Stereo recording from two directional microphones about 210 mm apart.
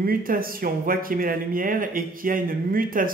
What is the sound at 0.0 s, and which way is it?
Speech, 45° right (ahead or behind).